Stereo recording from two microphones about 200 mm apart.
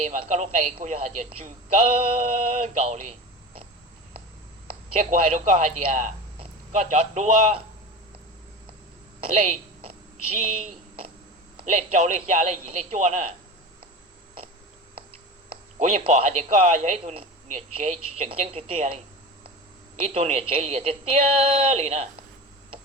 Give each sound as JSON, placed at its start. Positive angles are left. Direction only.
{"t": 0.0, "sound": "a man's voice", "side_deg": -35}
{"t": 4.9, "sound": "a man's voice", "side_deg": -35}
{"t": 9.3, "sound": "a man's voice", "side_deg": -35}
{"t": 15.8, "sound": "a man's voice", "side_deg": -35}
{"t": 20.1, "sound": "a man's voice", "side_deg": -35}